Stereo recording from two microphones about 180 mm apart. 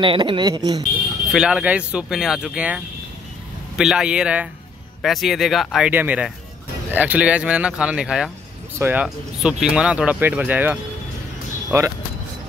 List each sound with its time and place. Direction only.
0.0 s speech: 25° right (ahead or behind)
1.3 s speech: 5° right (ahead or behind)